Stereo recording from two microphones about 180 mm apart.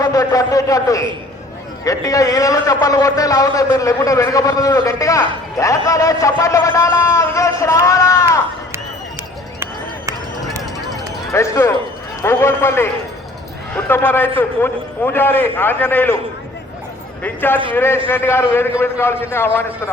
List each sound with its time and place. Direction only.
0.0 s a sound: 20° left (ahead or behind)
1.8 s a man's voice: 20° left (ahead or behind)
11.3 s a man's voice: 15° left (ahead or behind)
17.2 s a man's voice: 10° left (ahead or behind)